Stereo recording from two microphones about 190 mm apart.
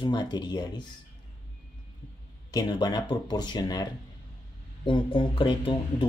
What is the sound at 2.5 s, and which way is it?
Speech, 20° left (ahead or behind).